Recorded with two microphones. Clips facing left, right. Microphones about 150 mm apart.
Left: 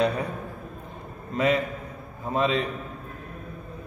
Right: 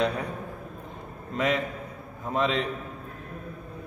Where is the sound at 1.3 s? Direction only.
5° left (ahead or behind).